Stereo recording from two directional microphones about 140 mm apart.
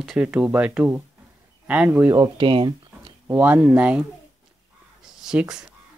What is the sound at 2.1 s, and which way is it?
Speech, 30° right (ahead or behind).